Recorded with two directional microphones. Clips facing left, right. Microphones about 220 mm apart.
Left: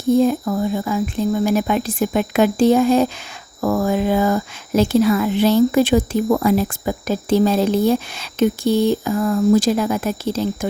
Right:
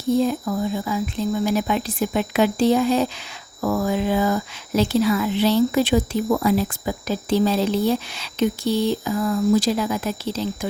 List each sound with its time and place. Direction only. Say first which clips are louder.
0.2 s speech: left 4 dB; 50° left (ahead or behind)